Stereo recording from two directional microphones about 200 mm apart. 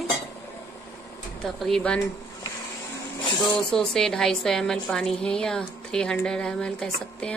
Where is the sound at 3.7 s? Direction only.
5° left (ahead or behind).